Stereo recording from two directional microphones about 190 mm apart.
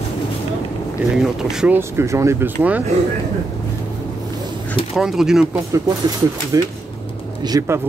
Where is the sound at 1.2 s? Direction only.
10° right (ahead or behind).